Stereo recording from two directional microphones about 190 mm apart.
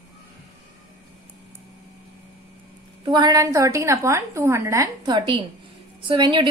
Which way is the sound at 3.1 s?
20° right (ahead or behind).